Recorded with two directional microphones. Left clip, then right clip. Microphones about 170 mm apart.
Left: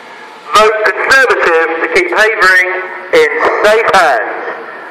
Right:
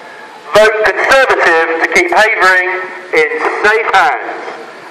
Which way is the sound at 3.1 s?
90° right.